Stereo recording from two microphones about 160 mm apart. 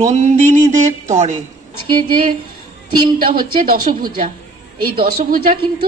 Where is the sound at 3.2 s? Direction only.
65° right (ahead or behind).